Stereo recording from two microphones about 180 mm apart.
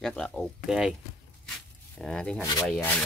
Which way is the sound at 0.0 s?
5° left (ahead or behind).